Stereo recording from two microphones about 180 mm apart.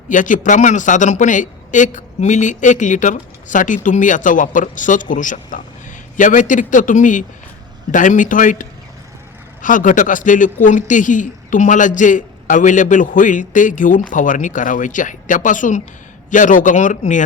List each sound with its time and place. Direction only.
0.1 s a man's voice: 45° left (ahead or behind)